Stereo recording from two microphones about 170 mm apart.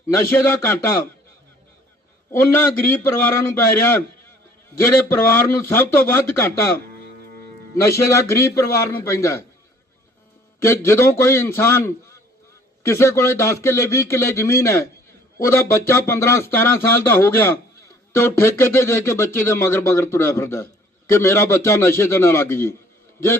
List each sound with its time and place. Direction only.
2.6 s speech: 15° left (ahead or behind)
7.9 s speech: 15° left (ahead or behind)
10.6 s a man's voice: 15° left (ahead or behind)